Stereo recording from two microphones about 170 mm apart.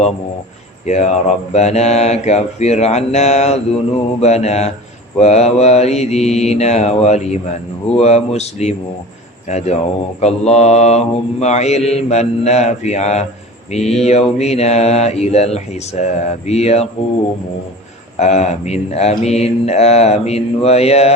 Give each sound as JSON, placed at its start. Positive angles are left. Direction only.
{"t": 0.9, "sound": "mantra", "side_deg": 40}
{"t": 18.2, "sound": "mantra", "side_deg": 40}